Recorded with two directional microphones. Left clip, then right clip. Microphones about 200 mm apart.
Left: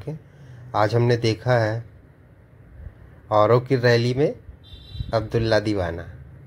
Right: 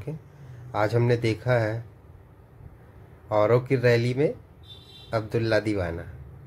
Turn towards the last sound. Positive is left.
turn(degrees=10)  # may be behind; listen again after turning